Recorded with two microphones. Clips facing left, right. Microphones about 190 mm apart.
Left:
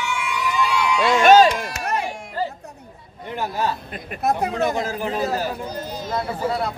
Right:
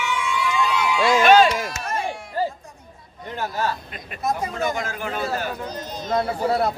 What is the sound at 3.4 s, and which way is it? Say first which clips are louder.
Speech: left 1 dB; 15° left (ahead or behind).